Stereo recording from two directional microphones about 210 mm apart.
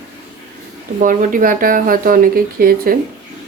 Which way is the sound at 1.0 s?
40° right (ahead or behind).